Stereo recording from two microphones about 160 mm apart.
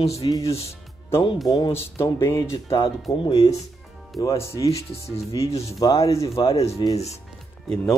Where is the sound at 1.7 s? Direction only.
15° left (ahead or behind).